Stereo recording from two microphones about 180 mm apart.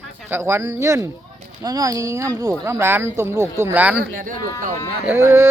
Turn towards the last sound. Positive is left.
turn(degrees=-15)  # may be behind; listen again after turning